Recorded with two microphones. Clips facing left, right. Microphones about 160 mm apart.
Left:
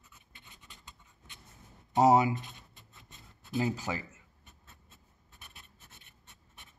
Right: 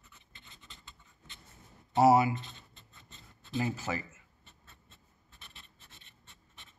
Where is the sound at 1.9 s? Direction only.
20° left (ahead or behind).